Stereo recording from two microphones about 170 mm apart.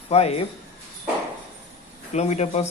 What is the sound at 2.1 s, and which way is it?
Speech, 40° left (ahead or behind).